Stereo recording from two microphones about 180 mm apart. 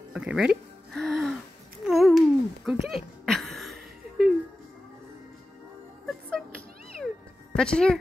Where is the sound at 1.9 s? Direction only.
Centre (ahead or behind).